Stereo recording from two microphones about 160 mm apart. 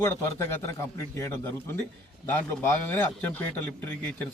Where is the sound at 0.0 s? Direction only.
20° left (ahead or behind).